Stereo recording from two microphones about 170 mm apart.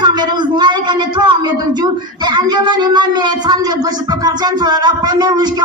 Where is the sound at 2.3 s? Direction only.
25° right (ahead or behind).